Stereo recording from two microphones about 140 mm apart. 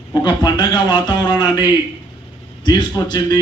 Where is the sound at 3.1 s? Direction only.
30° left (ahead or behind).